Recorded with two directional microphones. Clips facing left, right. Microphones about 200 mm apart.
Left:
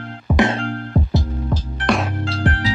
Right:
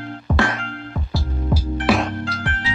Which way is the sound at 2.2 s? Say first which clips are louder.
Left 6 dB; 35° left (ahead or behind).